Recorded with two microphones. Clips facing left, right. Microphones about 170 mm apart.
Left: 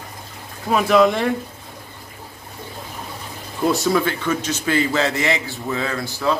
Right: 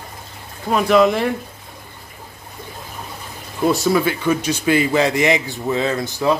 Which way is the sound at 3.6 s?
Centre (ahead or behind).